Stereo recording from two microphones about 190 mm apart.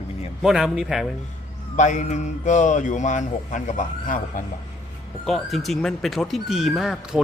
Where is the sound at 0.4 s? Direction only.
Centre (ahead or behind).